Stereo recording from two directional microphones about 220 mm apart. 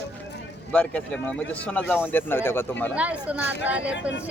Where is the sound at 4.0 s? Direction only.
55° left (ahead or behind).